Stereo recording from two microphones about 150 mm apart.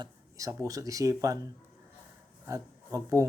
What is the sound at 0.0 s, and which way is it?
Speech, 20° right (ahead or behind).